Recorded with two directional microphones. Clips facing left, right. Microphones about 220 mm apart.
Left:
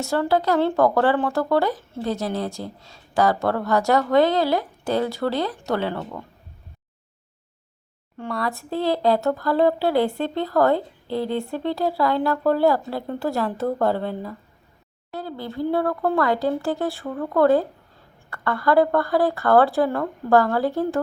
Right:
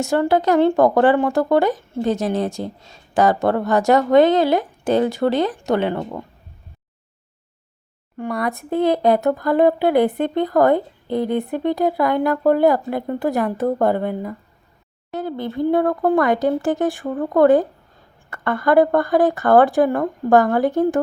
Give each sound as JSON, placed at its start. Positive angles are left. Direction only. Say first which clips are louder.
{"t": 0.0, "sound": "speech", "louder": "right 4 dB", "side_deg": -15}
{"t": 8.2, "sound": "speech", "louder": "right 4 dB", "side_deg": -15}